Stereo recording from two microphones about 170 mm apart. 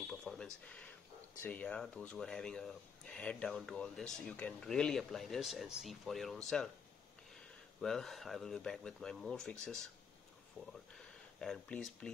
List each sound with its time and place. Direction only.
0.0 s a sound: 5° left (ahead or behind)
1.4 s speech: 10° left (ahead or behind)
7.8 s speech: centre (ahead or behind)